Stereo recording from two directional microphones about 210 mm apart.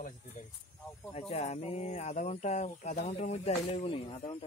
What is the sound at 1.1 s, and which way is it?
Speech, 30° left (ahead or behind).